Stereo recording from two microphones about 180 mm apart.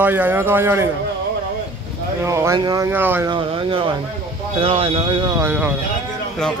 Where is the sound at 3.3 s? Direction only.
30° right (ahead or behind).